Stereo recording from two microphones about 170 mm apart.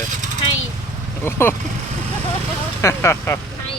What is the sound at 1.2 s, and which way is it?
Speech, 15° left (ahead or behind).